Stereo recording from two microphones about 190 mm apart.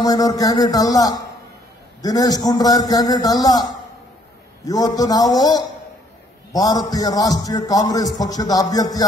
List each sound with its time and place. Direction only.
0.0 s a man's voice: 20° left (ahead or behind)
4.6 s a man's voice: 20° left (ahead or behind)